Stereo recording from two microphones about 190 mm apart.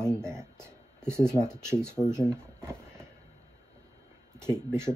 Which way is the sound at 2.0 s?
20° left (ahead or behind).